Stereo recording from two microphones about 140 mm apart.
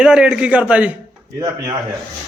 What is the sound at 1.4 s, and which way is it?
Speech, 20° right (ahead or behind).